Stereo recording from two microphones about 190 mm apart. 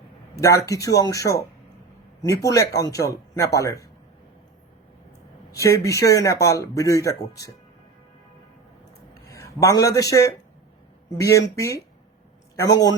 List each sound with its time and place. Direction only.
0.3 s speech: 15° left (ahead or behind)
5.5 s speech: 15° left (ahead or behind)
9.3 s a man's voice: 15° left (ahead or behind)